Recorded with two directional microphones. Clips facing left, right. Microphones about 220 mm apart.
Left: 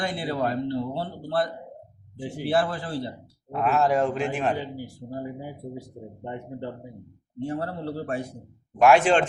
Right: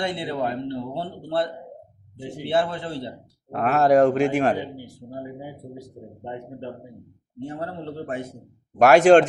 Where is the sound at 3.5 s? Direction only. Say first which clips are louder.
Right 4 dB; 60° right (ahead or behind).